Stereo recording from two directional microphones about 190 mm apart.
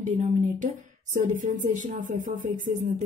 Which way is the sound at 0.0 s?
40° right (ahead or behind).